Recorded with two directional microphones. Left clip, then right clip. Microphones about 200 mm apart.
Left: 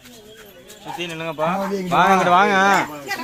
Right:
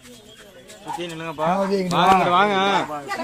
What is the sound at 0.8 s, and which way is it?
Speech, 40° left (ahead or behind).